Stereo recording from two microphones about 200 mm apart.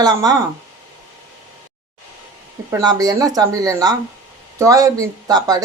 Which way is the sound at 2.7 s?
20° right (ahead or behind).